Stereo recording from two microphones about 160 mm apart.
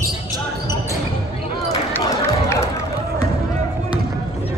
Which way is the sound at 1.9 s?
15° left (ahead or behind).